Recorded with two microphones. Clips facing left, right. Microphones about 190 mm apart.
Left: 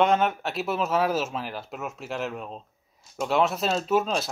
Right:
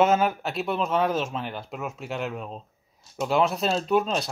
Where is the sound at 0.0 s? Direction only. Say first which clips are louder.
Right 1 dB; 5° right (ahead or behind).